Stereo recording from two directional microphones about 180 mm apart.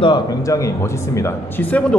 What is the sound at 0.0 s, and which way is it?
A man's voice, 25° left (ahead or behind).